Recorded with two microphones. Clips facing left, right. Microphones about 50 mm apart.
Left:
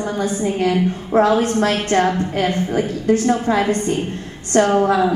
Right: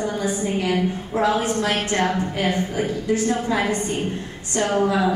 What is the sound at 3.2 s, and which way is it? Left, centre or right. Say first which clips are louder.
A woman's voice: left 5 dB; left.